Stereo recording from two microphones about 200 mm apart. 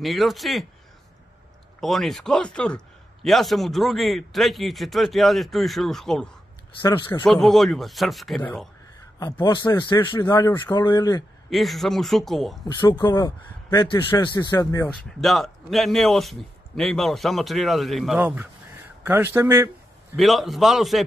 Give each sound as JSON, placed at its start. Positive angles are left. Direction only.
{"t": 0.0, "sound": "a man's voice", "side_deg": 0}
{"t": 1.8, "sound": "a man's voice", "side_deg": 0}
{"t": 6.8, "sound": "a man's voice", "side_deg": 25}
{"t": 7.2, "sound": "a man's voice", "side_deg": 0}
{"t": 9.2, "sound": "a man's voice", "side_deg": 20}
{"t": 11.5, "sound": "a man's voice", "side_deg": 0}
{"t": 12.6, "sound": "a man's voice", "side_deg": 25}
{"t": 15.0, "sound": "a man's voice", "side_deg": 0}
{"t": 20.2, "sound": "a man's voice", "side_deg": 0}